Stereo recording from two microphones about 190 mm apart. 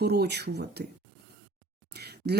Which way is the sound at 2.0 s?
60° right (ahead or behind).